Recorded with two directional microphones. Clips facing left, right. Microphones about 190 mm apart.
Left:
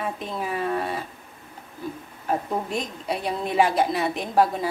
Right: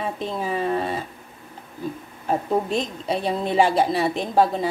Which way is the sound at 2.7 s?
25° right (ahead or behind).